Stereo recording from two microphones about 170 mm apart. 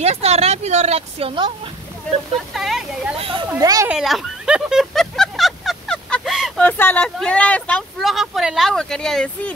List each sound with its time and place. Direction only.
0.0 s a woman's voice: 40° right (ahead or behind)
2.5 s speech: centre (ahead or behind)
3.2 s a woman's voice: 30° right (ahead or behind)
3.5 s speech: 20° right (ahead or behind)
3.9 s speech: centre (ahead or behind)